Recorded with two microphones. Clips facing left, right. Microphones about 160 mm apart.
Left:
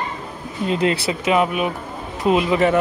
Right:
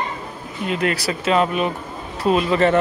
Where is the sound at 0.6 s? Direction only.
30° left (ahead or behind).